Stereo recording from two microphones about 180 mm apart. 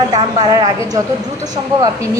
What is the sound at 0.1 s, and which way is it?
Speech, 25° right (ahead or behind).